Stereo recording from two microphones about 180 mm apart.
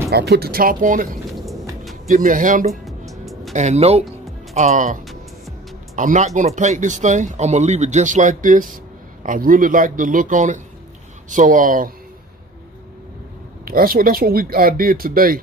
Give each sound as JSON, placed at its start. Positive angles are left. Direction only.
{"t": 0.1, "sound": "speech", "side_deg": -65}
{"t": 2.0, "sound": "speech", "side_deg": -45}
{"t": 2.7, "sound": "music", "side_deg": 0}
{"t": 3.5, "sound": "speech", "side_deg": -40}
{"t": 5.9, "sound": "speech", "side_deg": -45}
{"t": 13.7, "sound": "speech", "side_deg": -55}